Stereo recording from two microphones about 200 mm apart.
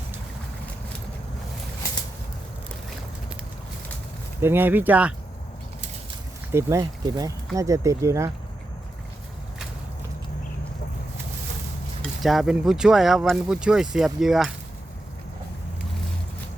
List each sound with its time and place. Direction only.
4.4 s speech: 10° right (ahead or behind)
6.5 s speech: 15° right (ahead or behind)
12.2 s speech: centre (ahead or behind)